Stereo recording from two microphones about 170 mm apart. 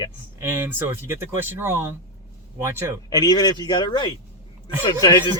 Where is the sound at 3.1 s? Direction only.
20° left (ahead or behind).